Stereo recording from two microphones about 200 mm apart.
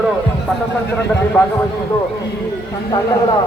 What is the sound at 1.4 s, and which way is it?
Speech, 10° left (ahead or behind).